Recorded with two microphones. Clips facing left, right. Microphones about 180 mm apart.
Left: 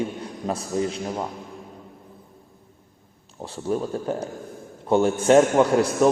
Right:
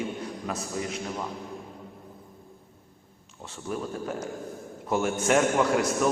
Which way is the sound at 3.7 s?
30° left (ahead or behind).